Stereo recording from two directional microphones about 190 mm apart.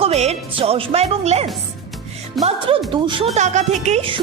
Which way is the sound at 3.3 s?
40° right (ahead or behind).